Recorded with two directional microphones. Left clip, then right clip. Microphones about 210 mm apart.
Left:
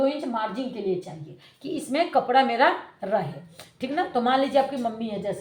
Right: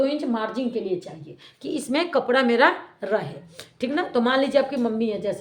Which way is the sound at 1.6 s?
45° right (ahead or behind).